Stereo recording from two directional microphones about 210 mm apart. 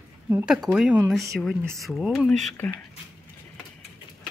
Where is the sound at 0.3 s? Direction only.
10° right (ahead or behind); by 2.7 s 10° left (ahead or behind).